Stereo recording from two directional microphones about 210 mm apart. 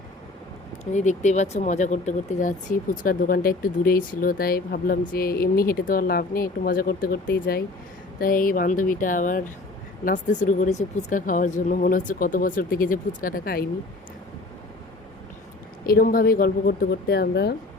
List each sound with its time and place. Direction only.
0.9 s speech: 35° left (ahead or behind)
15.9 s speech: 45° left (ahead or behind)